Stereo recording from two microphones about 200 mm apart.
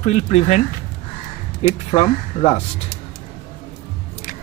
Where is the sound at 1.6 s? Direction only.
30° left (ahead or behind).